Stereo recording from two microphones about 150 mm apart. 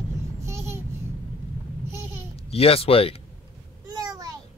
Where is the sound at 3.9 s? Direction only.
25° right (ahead or behind).